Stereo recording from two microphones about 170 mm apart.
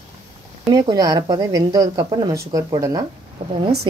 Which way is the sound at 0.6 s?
25° right (ahead or behind).